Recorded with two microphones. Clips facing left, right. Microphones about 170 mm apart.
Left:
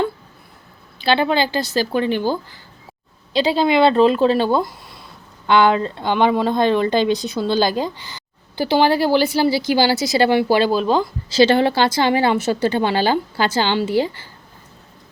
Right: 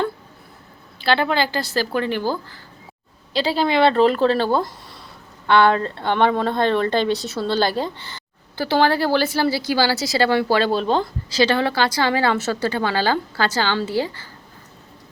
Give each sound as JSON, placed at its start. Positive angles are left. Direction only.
{"t": 1.0, "sound": "speech", "side_deg": 20}
{"t": 11.3, "sound": "speech", "side_deg": 25}